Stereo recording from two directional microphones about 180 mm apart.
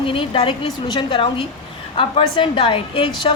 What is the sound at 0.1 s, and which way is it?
A woman's voice, 30° left (ahead or behind).